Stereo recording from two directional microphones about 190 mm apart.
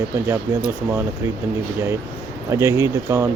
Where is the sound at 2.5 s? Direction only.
15° right (ahead or behind).